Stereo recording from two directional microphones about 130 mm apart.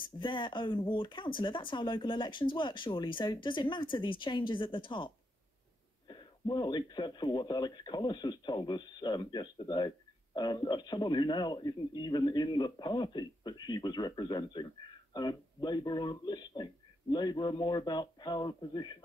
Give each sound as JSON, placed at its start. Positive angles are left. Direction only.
{"t": 0.2, "sound": "speech", "side_deg": 40}